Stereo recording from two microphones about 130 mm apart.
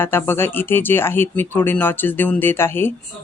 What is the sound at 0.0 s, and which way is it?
Speech, 15° left (ahead or behind).